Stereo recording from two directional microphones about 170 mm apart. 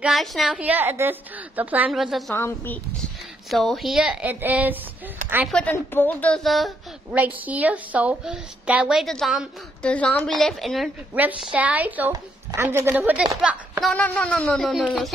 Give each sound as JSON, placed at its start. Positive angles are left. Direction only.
{"t": 0.0, "sound": "a woman's voice", "side_deg": 0}
{"t": 2.3, "sound": "speech", "side_deg": 10}
{"t": 3.4, "sound": "a woman's voice", "side_deg": 0}
{"t": 5.5, "sound": "a woman's voice", "side_deg": 10}